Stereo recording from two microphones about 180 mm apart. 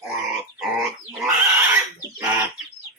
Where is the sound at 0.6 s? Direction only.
Centre (ahead or behind).